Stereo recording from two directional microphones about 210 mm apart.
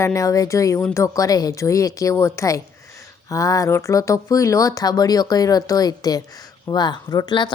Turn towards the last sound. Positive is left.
turn(degrees=20)  # may be behind; listen again after turning